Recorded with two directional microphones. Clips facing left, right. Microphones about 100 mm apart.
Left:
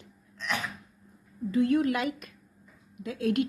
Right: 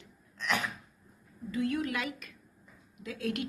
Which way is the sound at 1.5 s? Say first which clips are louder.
Left 7 dB; 40° left (ahead or behind).